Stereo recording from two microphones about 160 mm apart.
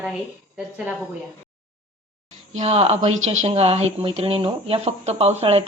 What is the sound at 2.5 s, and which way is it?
A woman's voice, 40° right (ahead or behind).